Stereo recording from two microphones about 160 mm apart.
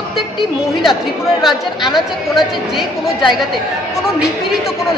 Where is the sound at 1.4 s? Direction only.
Centre (ahead or behind).